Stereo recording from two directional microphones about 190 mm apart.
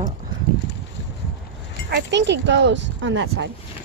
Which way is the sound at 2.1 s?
70° right (ahead or behind).